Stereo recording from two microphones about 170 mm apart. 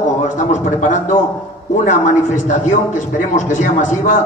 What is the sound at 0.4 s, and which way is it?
A man's voice, 45° left (ahead or behind).